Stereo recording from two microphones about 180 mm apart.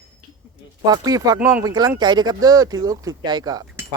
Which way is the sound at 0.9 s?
20° right (ahead or behind).